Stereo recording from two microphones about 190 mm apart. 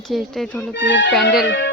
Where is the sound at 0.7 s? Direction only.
70° left (ahead or behind).